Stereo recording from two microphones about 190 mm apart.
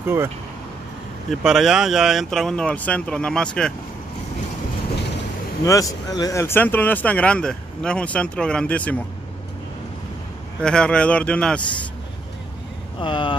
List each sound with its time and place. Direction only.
0.0 s speech: 10° right (ahead or behind)
1.3 s speech: centre (ahead or behind)
5.6 s speech: 15° left (ahead or behind)
10.6 s speech: 5° left (ahead or behind)
13.0 s speech: 25° left (ahead or behind)